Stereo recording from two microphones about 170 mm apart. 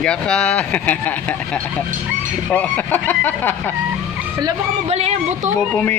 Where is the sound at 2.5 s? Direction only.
10° left (ahead or behind).